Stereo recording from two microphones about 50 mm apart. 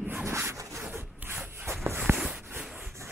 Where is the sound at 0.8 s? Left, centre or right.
Right.